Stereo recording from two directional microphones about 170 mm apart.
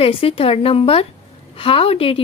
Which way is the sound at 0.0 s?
35° left (ahead or behind).